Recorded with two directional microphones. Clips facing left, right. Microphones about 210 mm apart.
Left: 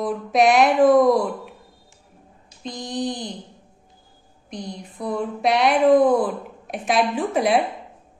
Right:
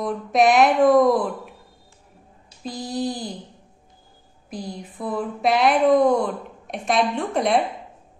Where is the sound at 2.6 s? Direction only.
5° right (ahead or behind).